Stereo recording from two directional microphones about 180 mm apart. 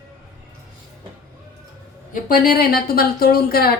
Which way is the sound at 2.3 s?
55° left (ahead or behind).